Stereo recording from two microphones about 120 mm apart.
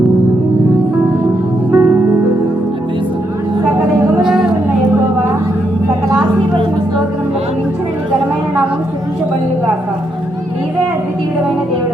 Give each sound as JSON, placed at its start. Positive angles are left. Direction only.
{"t": 1.7, "sound": "music", "side_deg": -20}
{"t": 4.2, "sound": "music", "side_deg": -5}